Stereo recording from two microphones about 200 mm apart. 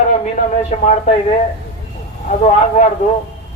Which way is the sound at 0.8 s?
35° left (ahead or behind).